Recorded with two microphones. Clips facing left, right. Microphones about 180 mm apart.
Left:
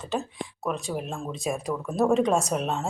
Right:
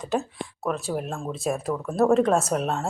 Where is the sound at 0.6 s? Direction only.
Centre (ahead or behind).